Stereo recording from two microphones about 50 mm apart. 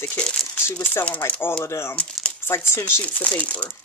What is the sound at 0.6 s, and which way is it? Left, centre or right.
Speech, left.